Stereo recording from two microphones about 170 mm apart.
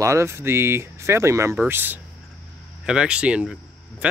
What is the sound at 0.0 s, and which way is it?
Speech, 15° right (ahead or behind).